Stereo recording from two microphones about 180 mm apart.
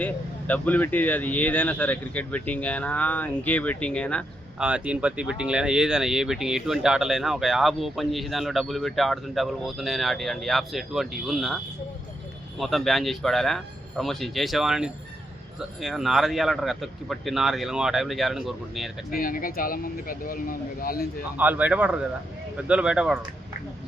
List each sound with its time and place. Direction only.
0.0 s speech: 10° left (ahead or behind)
4.6 s speech: 5° right (ahead or behind)
19.1 s speech: 50° left (ahead or behind)
21.3 s speech: 10° right (ahead or behind)